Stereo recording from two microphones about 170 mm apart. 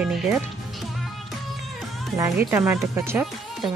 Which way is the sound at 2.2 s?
10° right (ahead or behind).